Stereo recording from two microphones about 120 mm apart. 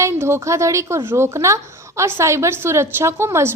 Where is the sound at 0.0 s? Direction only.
20° right (ahead or behind).